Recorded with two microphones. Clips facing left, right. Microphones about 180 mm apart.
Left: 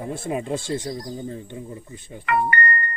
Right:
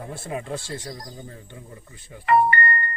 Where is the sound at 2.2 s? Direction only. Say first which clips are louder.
Right 3 dB; 30° right (ahead or behind).